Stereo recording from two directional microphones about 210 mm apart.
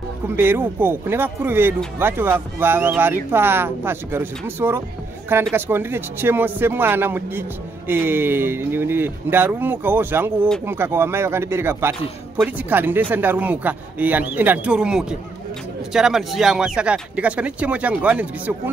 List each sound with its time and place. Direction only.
0.4 s speech: 10° right (ahead or behind)